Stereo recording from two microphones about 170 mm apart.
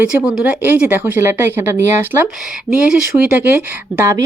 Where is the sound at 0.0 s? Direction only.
5° right (ahead or behind).